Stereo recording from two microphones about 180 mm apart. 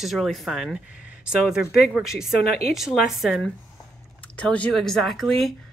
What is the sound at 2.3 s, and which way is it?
Speech, 60° left (ahead or behind).